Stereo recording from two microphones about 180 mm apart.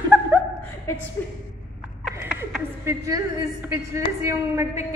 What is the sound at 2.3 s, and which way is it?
A woman's voice, 15° right (ahead or behind).